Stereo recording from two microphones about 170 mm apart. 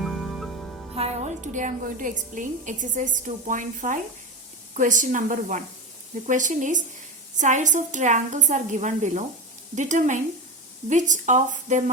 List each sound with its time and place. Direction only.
0.0 s music: centre (ahead or behind)
0.9 s a woman's voice: 40° right (ahead or behind)